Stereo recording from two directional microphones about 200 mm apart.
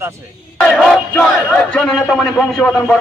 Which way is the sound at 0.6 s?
Centre (ahead or behind).